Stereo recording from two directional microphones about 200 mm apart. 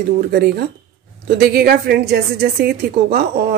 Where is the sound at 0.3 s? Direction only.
55° right (ahead or behind).